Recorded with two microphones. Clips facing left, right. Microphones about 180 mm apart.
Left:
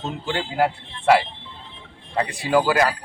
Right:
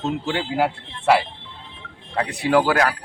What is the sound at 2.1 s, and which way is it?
Speech, centre (ahead or behind).